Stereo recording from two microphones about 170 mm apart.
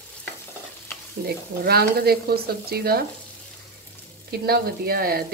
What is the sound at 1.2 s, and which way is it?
Speech, 65° right (ahead or behind).